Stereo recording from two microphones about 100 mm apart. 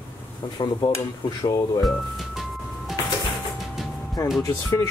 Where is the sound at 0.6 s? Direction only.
55° left (ahead or behind).